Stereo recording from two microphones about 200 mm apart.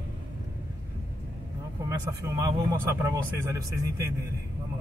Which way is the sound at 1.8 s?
20° right (ahead or behind).